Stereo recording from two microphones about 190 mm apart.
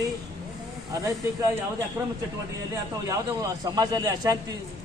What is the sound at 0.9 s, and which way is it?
Speech, 15° right (ahead or behind).